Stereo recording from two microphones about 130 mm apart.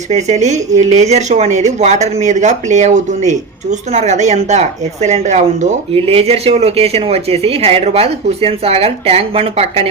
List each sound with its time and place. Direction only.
0.1 s speech: 60° right (ahead or behind)
5.9 s a woman's voice: 50° right (ahead or behind)